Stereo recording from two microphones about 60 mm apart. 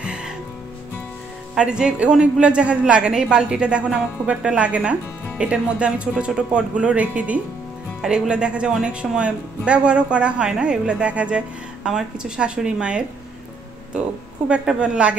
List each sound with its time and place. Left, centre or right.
0.0 s music: centre
1.5 s a woman's voice: centre
14.5 s a woman's voice: centre